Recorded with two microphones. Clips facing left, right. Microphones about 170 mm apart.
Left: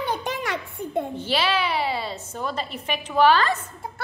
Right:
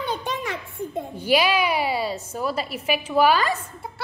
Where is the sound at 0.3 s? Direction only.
75° left (ahead or behind).